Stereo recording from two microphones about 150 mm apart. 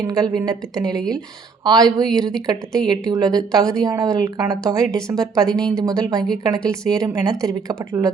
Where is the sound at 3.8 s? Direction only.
25° right (ahead or behind).